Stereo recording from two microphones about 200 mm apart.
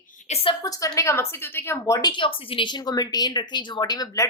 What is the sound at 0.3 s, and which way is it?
Speech, 30° left (ahead or behind).